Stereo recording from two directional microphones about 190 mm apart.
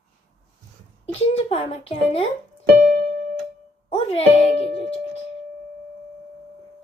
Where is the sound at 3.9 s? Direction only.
30° left (ahead or behind).